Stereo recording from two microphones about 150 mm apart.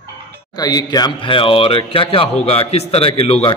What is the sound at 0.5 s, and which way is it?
Speech, 25° left (ahead or behind).